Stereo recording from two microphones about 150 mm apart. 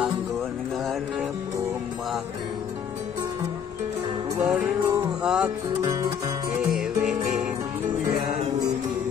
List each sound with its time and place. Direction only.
4.4 s music: 5° right (ahead or behind)
5.8 s music: 25° right (ahead or behind)
6.6 s music: 5° right (ahead or behind)
7.1 s music: 55° right (ahead or behind)